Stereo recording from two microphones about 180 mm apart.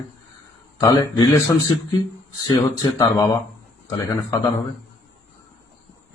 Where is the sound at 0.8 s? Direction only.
20° left (ahead or behind).